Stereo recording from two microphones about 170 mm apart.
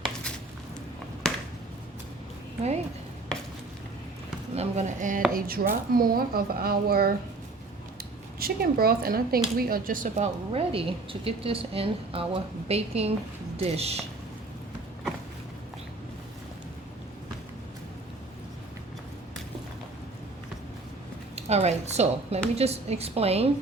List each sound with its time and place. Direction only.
1.2 s a sound: 5° left (ahead or behind)
4.5 s a woman's voice: 40° right (ahead or behind); by 7.1 s 65° right (ahead or behind)
8.4 s a woman's voice: 60° right (ahead or behind)
10.5 s a woman's voice: 35° right (ahead or behind)
21.3 s a woman's voice: 40° right (ahead or behind)